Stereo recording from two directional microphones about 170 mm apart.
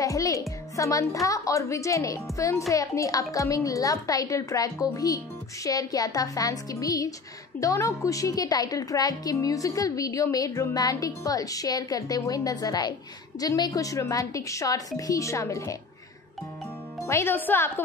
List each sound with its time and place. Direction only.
0.0 s a woman's voice: 20° left (ahead or behind)
17.0 s speech: 15° left (ahead or behind)